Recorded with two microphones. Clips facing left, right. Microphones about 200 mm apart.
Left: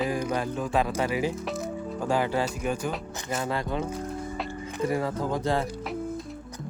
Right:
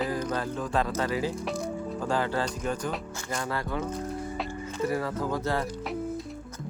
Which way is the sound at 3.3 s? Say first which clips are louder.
Left 2 dB; 20° left (ahead or behind).